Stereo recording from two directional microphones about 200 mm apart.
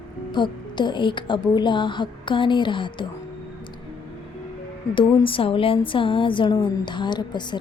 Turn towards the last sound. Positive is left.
turn(degrees=20)  # may be behind; listen again after turning